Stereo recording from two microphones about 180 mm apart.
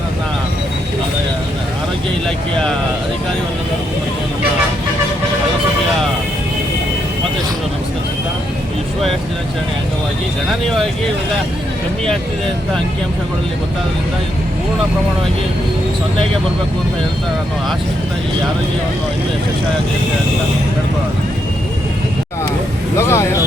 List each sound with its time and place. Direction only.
2.2 s vehicle: 5° left (ahead or behind)
23.0 s speech: 15° left (ahead or behind)